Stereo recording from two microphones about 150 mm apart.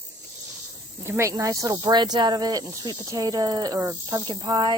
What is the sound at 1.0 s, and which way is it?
Speech, 20° right (ahead or behind).